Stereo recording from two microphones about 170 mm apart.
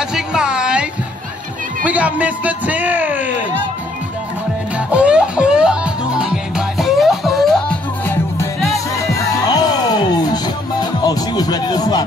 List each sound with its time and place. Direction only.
0.1 s a sound: 5° right (ahead or behind)
1.9 s a man's voice: 10° right (ahead or behind)
4.7 s music: 5° right (ahead or behind)
8.0 s music: 15° left (ahead or behind)
8.5 s music: centre (ahead or behind)
9.5 s music: 25° left (ahead or behind)